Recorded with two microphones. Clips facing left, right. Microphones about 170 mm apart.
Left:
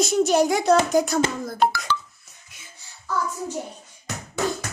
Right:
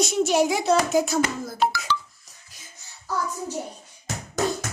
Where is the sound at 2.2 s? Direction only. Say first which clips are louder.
Left 1 dB; 35° right (ahead or behind).